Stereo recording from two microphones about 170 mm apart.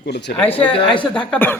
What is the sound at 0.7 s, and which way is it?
Speech, 30° left (ahead or behind).